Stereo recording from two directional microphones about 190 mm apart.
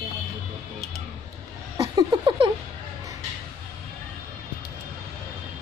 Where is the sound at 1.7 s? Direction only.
20° right (ahead or behind).